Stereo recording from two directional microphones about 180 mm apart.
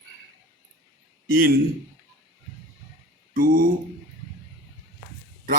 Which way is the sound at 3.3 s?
50° right (ahead or behind).